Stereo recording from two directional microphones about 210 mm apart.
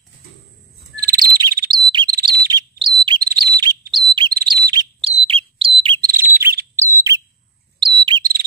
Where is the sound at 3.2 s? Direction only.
45° right (ahead or behind).